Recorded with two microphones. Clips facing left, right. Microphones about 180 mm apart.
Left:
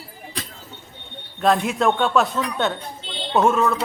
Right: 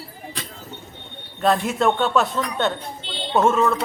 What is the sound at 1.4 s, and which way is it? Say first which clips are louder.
A man's voice: even; centre (ahead or behind).